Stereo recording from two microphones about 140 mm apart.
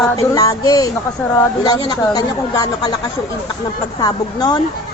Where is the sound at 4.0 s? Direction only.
30° left (ahead or behind).